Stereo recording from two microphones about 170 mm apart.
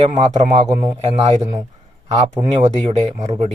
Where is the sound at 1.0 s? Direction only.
40° right (ahead or behind).